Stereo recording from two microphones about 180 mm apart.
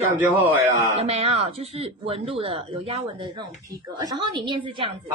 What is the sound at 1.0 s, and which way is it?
A woman's voice, 35° right (ahead or behind).